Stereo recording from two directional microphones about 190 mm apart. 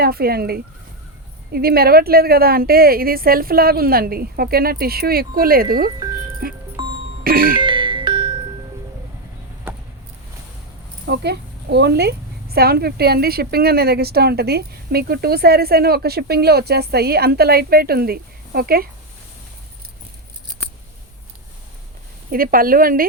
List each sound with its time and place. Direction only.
0.0 s a woman's voice: 55° right (ahead or behind)
6.8 s music: 25° right (ahead or behind)
7.3 s a woman's voice: 50° right (ahead or behind)
7.5 s music: 25° right (ahead or behind)
11.0 s a woman's voice: 60° right (ahead or behind)
22.3 s a woman's voice: 50° right (ahead or behind)